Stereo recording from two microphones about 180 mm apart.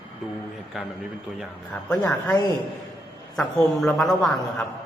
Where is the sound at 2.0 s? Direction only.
20° left (ahead or behind).